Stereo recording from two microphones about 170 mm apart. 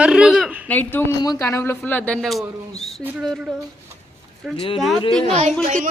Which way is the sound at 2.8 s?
Centre (ahead or behind).